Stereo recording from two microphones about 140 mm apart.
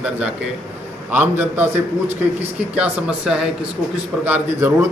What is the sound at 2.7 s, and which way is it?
A man's voice, 5° right (ahead or behind).